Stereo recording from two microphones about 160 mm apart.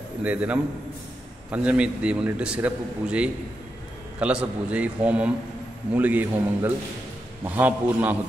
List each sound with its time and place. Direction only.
0.2 s a man's voice: 10° right (ahead or behind)